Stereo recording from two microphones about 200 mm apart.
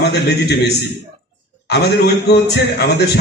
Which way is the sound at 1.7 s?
55° left (ahead or behind).